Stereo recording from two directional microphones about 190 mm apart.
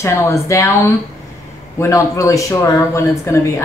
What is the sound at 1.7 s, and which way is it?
Speech, 15° left (ahead or behind).